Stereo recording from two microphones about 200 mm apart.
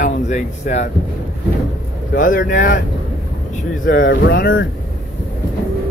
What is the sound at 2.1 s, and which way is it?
Speech, 45° left (ahead or behind).